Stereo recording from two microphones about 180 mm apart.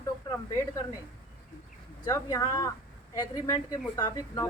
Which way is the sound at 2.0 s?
20° left (ahead or behind).